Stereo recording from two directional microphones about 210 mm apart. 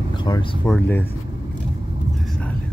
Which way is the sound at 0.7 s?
10° left (ahead or behind).